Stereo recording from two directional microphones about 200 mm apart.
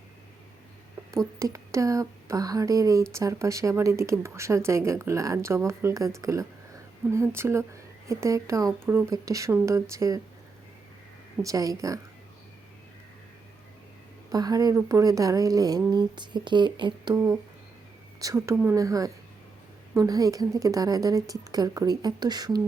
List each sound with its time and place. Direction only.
1.1 s speech: 15° right (ahead or behind)
11.4 s speech: 15° right (ahead or behind)
14.3 s speech: 20° right (ahead or behind)